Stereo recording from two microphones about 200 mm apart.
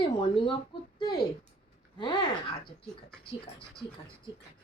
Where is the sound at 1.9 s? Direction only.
25° left (ahead or behind).